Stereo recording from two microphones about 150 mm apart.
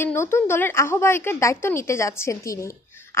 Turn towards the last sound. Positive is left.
turn(degrees=20)  # may be behind; listen again after turning